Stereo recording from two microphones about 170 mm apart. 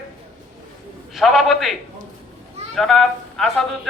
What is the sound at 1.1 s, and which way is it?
Speech, centre (ahead or behind).